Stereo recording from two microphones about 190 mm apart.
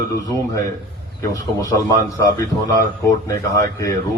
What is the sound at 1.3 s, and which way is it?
Speech, 15° left (ahead or behind).